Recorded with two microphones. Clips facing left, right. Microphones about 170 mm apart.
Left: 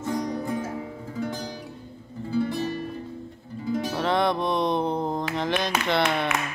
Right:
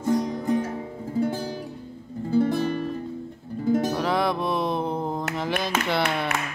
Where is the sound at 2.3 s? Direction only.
45° right (ahead or behind).